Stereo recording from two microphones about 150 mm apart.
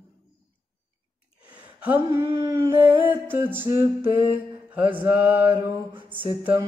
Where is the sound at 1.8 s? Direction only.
15° right (ahead or behind).